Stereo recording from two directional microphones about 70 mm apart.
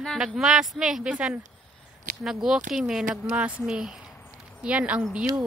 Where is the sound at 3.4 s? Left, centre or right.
Centre.